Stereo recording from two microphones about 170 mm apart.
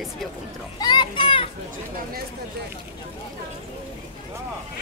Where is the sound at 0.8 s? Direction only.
25° left (ahead or behind).